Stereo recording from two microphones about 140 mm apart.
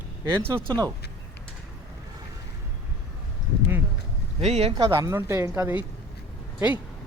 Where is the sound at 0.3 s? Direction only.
20° right (ahead or behind).